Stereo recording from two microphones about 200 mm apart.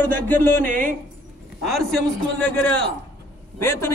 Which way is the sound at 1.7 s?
Centre (ahead or behind).